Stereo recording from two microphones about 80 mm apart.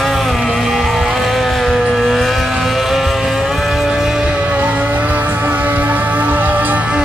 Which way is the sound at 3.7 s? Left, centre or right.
Centre.